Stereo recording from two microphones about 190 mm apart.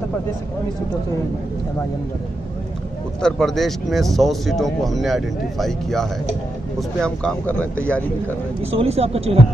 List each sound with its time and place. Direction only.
3.2 s a man's voice: 5° left (ahead or behind)
8.7 s speech: 30° right (ahead or behind)